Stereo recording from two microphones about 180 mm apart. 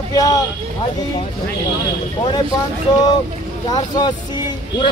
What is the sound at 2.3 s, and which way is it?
A man's voice, 20° left (ahead or behind).